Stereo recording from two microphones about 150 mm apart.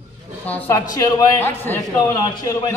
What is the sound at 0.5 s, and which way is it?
A woman's voice, 20° left (ahead or behind).